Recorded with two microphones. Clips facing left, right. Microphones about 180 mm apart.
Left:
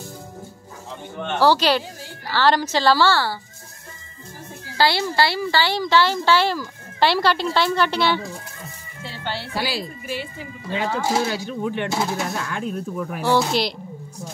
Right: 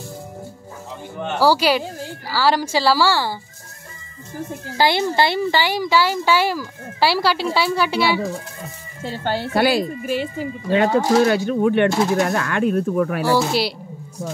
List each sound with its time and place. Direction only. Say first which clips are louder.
1.2 s speech: right 1 dB; 10° right (ahead or behind)
4.7 s speech: right 2 dB; 20° right (ahead or behind)
9.0 s speech: right 7 dB; 45° right (ahead or behind)
9.5 s speech: right 11 dB; 55° right (ahead or behind)
11.2 s speech: right 8 dB; 60° right (ahead or behind); by 13.2 s 75° right (ahead or behind)
13.3 s speech: left 4 dB; 5° right (ahead or behind)